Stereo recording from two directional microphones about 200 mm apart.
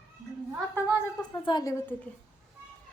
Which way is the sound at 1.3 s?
20° left (ahead or behind).